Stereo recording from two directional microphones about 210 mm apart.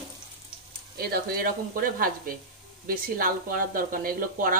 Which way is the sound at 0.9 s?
45° right (ahead or behind).